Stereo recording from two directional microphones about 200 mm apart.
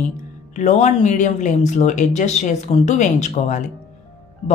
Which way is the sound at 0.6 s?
35° left (ahead or behind).